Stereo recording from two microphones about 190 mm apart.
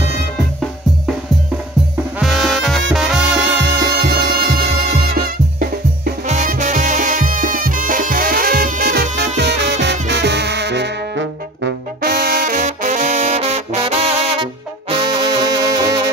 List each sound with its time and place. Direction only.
2.1 s music: centre (ahead or behind)
3.5 s music: 60° right (ahead or behind)
4.6 s music: 30° right (ahead or behind)
5.0 s music: 50° right (ahead or behind); by 16.1 s 25° right (ahead or behind)